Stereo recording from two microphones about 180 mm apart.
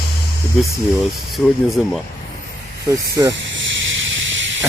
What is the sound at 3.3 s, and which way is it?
Snake, 85° right.